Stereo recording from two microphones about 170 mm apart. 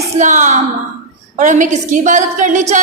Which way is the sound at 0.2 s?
45° right (ahead or behind).